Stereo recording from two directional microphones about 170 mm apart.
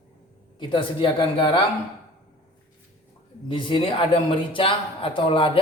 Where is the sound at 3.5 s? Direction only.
30° left (ahead or behind).